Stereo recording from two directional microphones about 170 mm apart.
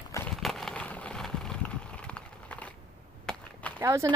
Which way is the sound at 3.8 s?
15° right (ahead or behind).